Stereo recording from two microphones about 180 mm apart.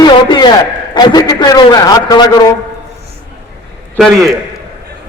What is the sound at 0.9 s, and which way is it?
A man's voice, 25° left (ahead or behind).